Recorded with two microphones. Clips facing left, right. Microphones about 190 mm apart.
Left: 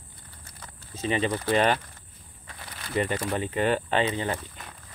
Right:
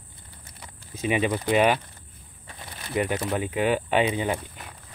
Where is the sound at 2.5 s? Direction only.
20° right (ahead or behind).